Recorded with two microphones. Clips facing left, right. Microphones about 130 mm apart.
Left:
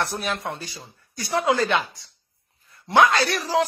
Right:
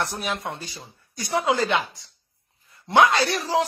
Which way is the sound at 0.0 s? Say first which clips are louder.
Left 1 dB; 15° right (ahead or behind).